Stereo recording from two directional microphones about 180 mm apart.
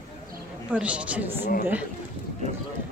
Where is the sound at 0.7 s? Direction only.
5° right (ahead or behind).